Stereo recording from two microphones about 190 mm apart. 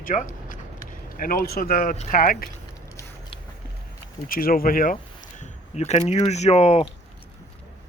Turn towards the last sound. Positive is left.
turn(degrees=30)  # may be behind; listen again after turning